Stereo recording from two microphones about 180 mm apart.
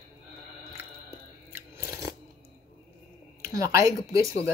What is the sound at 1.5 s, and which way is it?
Biting, 15° right (ahead or behind).